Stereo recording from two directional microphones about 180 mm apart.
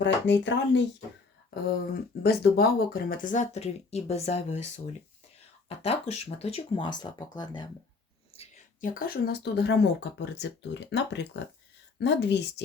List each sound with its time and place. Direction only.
0.0 s speech: 80° left
2.2 s speech: 60° left (ahead or behind); by 4.6 s 35° left (ahead or behind)
5.6 s speech: 35° left (ahead or behind)
8.3 s a sound: 30° left (ahead or behind)
8.8 s speech: 55° left (ahead or behind); by 12.6 s 75° left (ahead or behind)